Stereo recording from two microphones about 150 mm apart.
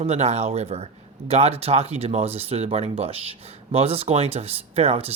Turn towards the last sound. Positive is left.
turn(degrees=-45)  # may be behind; listen again after turning